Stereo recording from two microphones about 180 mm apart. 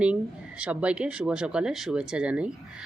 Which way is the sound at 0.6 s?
5° right (ahead or behind).